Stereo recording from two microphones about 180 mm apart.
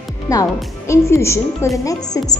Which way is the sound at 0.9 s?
15° left (ahead or behind).